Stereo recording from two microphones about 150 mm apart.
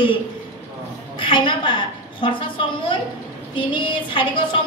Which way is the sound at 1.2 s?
35° left (ahead or behind).